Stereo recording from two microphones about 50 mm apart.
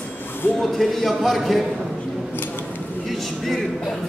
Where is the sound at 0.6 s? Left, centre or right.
Centre.